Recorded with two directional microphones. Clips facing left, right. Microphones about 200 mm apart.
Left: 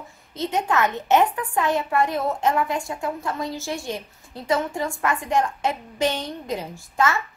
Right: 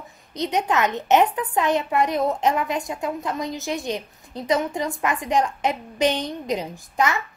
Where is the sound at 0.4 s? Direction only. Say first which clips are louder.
Right 1 dB; 20° right (ahead or behind).